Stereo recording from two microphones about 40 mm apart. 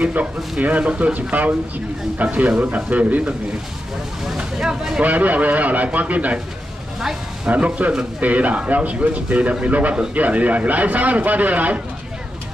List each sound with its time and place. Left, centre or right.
0.0 s speech: right
2.6 s speech: right
4.6 s speech: centre
5.0 s speech: right
7.4 s speech: right